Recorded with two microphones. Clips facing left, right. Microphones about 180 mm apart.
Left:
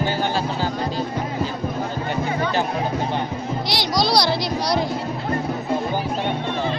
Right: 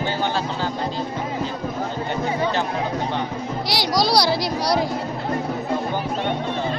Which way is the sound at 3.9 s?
10° right (ahead or behind).